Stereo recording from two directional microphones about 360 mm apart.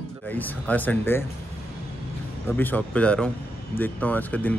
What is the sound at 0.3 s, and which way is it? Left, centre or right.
Speech, centre.